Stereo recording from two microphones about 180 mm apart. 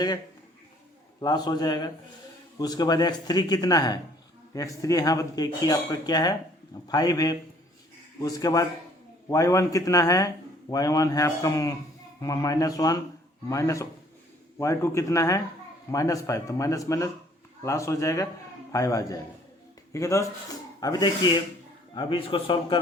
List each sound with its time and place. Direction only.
1.2 s a man's voice: 20° left (ahead or behind)